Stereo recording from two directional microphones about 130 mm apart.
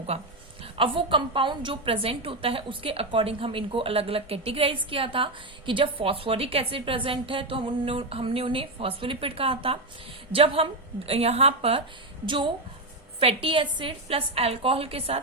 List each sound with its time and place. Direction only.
0.6 s a woman's voice: 40° right (ahead or behind)
12.2 s a woman's voice: 40° right (ahead or behind)